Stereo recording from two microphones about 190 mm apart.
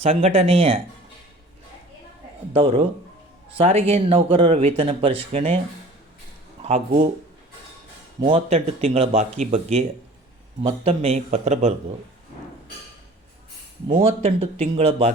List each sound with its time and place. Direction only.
0.0 s speech: 35° right (ahead or behind)
2.5 s a man's voice: 30° right (ahead or behind)
6.6 s speech: 35° right (ahead or behind)
8.2 s speech: 30° right (ahead or behind)
13.8 s speech: 30° right (ahead or behind)